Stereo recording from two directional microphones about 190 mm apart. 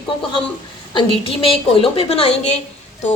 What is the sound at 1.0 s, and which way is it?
A woman's voice, 30° left (ahead or behind).